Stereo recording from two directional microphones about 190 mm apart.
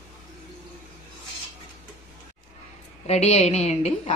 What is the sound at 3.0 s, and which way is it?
A woman's voice, 35° left (ahead or behind).